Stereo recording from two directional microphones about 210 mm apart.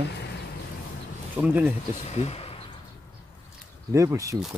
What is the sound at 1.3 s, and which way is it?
Speech, 10° right (ahead or behind).